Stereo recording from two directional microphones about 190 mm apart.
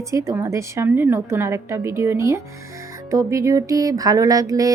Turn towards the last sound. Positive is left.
turn(degrees=-20)  # may be behind; listen again after turning